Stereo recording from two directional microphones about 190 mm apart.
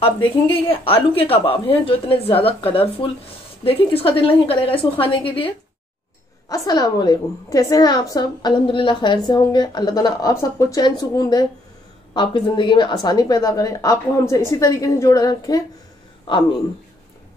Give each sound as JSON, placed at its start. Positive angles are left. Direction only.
{"t": 0.0, "sound": "a woman's voice", "side_deg": 30}
{"t": 6.5, "sound": "a woman's voice", "side_deg": 20}